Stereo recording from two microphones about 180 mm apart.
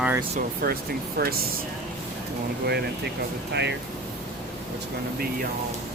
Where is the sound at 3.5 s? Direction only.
70° right (ahead or behind).